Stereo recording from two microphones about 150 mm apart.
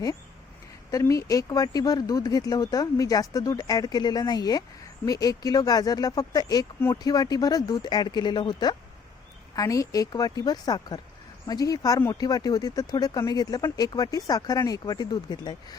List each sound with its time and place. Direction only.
0.9 s speech: 20° left (ahead or behind)